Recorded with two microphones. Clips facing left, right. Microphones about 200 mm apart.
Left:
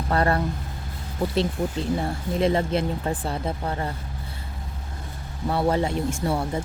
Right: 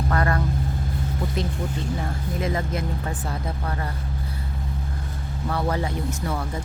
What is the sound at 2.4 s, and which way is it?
Speech, 30° left (ahead or behind).